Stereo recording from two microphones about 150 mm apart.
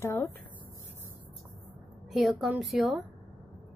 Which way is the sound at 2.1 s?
Centre (ahead or behind).